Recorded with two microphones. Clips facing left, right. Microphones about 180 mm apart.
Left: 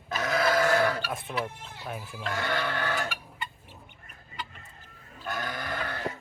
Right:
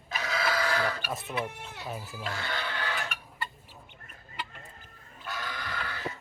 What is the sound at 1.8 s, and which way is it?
Speech, centre (ahead or behind).